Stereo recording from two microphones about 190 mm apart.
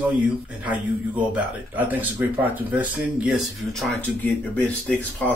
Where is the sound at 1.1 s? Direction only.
10° right (ahead or behind).